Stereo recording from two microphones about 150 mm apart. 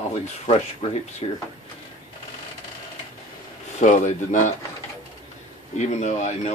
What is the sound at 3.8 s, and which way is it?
Speech, 55° left (ahead or behind).